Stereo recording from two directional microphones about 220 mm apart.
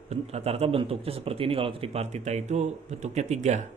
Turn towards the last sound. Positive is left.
turn(degrees=-30)  # may be behind; listen again after turning